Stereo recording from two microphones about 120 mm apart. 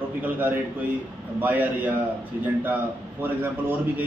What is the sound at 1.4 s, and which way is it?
A man's voice, 15° right (ahead or behind).